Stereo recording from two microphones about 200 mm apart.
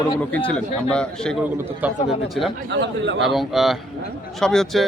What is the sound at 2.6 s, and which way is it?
Speech, 65° right (ahead or behind).